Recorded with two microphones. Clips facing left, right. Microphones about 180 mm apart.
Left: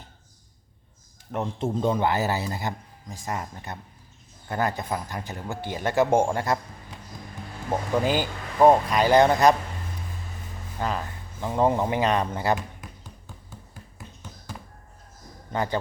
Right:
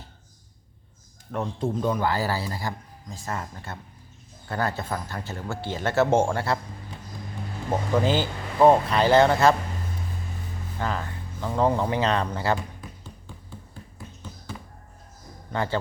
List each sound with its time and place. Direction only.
1.3 s a man's voice: 20° left (ahead or behind)
7.7 s a man's voice: 15° left (ahead or behind)
10.8 s a man's voice: 15° left (ahead or behind)
15.5 s a man's voice: 15° left (ahead or behind)